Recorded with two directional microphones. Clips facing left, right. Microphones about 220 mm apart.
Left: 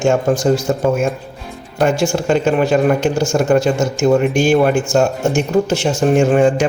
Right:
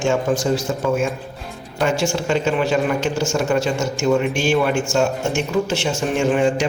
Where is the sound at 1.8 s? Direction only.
50° left (ahead or behind).